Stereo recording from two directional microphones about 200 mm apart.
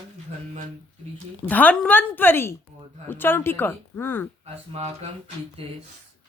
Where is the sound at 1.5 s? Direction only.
10° left (ahead or behind).